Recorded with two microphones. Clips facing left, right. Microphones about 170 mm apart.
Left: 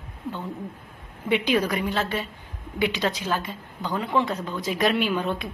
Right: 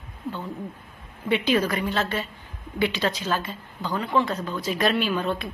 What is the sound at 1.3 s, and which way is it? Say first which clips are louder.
A woman's voice: even; 15° left (ahead or behind).